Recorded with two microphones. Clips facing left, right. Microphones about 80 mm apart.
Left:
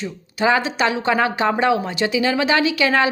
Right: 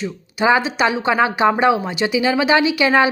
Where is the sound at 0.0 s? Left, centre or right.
Centre.